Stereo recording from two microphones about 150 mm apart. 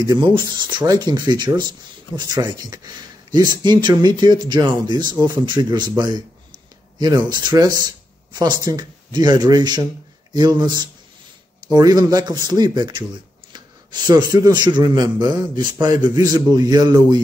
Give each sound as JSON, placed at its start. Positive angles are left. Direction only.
{"t": 0.0, "sound": "speech", "side_deg": -25}
{"t": 14.0, "sound": "speech", "side_deg": -25}